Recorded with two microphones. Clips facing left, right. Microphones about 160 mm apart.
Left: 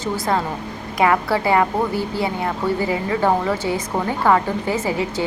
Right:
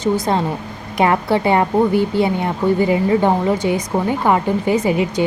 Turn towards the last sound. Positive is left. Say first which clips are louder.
# right 5 dB
turn(degrees=-15)  # may be behind; listen again after turning